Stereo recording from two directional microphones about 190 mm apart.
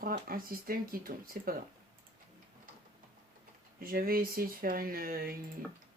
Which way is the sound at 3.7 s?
50° right (ahead or behind).